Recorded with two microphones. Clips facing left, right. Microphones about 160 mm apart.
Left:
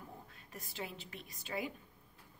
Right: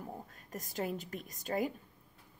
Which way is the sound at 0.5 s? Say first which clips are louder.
Right 8 dB; 45° right (ahead or behind).